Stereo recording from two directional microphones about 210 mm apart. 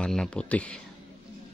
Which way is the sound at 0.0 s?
5° left (ahead or behind).